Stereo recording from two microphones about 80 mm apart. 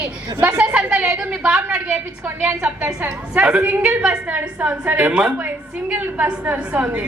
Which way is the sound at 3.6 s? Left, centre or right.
Right.